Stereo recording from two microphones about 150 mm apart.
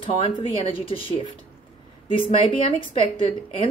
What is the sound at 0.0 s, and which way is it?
A woman's voice, 35° left (ahead or behind).